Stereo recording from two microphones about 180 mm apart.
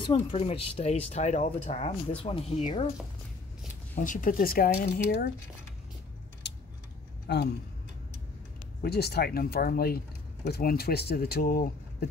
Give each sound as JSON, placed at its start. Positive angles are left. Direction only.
{"t": 0.0, "sound": "speech", "side_deg": 30}
{"t": 3.9, "sound": "speech", "side_deg": 45}
{"t": 6.4, "sound": "a sound", "side_deg": 75}
{"t": 7.3, "sound": "speech", "side_deg": 70}
{"t": 8.8, "sound": "speech", "side_deg": 60}